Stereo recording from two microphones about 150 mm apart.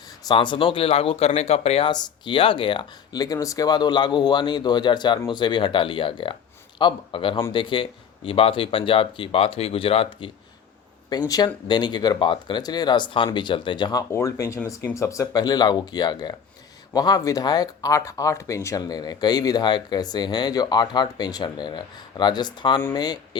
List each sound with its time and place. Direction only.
0.3 s speech: 35° left (ahead or behind)
1.9 s speech: 30° left (ahead or behind)